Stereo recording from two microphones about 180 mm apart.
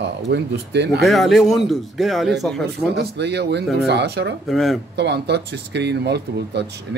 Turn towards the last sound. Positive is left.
turn(degrees=-70)  # may be behind; listen again after turning